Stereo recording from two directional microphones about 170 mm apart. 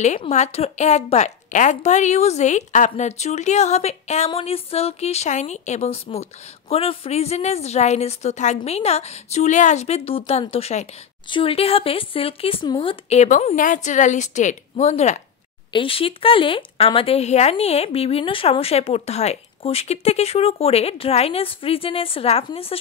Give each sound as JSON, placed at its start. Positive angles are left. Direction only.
{"t": 0.3, "sound": "speech", "side_deg": 40}
{"t": 15.7, "sound": "speech", "side_deg": 30}